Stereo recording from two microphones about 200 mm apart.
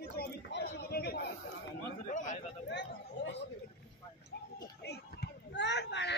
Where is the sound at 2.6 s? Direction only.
60° left (ahead or behind).